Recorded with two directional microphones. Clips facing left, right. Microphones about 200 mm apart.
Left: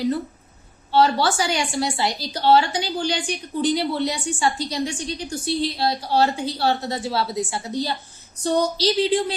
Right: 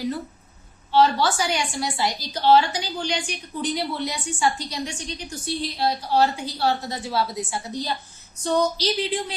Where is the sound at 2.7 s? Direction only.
30° left (ahead or behind).